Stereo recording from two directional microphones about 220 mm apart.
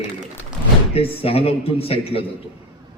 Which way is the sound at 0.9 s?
25° left (ahead or behind).